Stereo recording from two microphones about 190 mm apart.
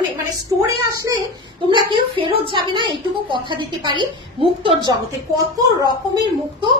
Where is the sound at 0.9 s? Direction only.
20° right (ahead or behind).